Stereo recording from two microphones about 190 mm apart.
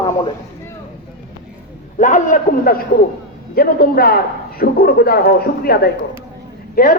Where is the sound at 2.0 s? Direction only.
40° left (ahead or behind).